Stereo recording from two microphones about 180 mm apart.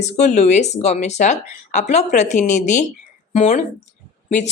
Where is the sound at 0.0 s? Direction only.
40° left (ahead or behind).